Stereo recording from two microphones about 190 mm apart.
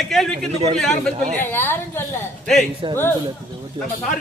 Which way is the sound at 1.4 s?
10° left (ahead or behind).